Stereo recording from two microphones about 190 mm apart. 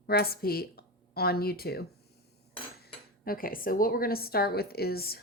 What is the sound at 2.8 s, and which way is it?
Speech, 50° left (ahead or behind).